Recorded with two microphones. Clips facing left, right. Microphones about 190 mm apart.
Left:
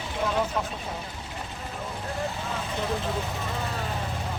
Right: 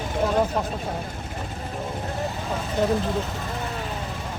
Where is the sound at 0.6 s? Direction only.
40° right (ahead or behind).